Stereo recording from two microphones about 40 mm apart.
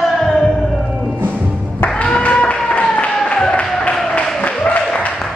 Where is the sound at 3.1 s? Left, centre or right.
Left.